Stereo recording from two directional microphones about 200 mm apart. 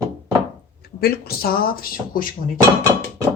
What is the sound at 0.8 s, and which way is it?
Speech, 50° left (ahead or behind).